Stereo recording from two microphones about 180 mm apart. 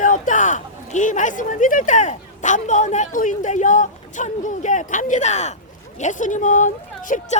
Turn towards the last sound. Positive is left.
turn(degrees=45)  # may be behind; listen again after turning